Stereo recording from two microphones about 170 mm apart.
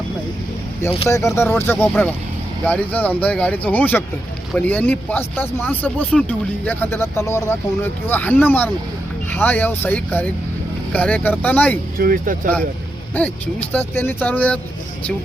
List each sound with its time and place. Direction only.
1.0 s speech: 15° left (ahead or behind)
11.9 s speech: 55° right (ahead or behind)
13.2 s speech: 10° left (ahead or behind)